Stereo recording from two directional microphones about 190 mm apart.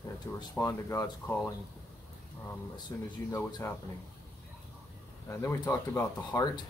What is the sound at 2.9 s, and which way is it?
Speech, 15° left (ahead or behind).